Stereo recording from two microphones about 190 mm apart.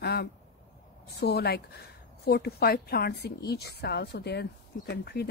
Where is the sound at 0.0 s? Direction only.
55° left (ahead or behind).